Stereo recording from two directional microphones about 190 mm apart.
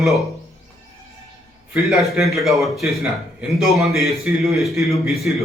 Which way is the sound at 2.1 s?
Centre (ahead or behind).